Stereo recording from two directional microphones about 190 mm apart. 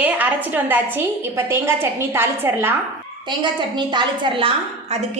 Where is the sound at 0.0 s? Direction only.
10° right (ahead or behind).